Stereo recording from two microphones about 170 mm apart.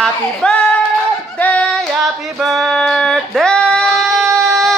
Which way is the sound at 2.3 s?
Centre (ahead or behind).